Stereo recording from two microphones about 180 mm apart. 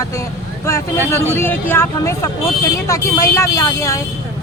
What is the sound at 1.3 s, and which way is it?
Speech, 10° left (ahead or behind).